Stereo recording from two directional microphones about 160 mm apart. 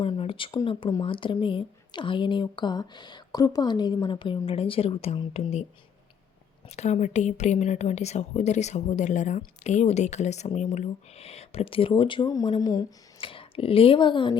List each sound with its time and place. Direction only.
0.0 s speech: 35° left (ahead or behind)
6.7 s speech: 45° left (ahead or behind); by 14.3 s 30° left (ahead or behind)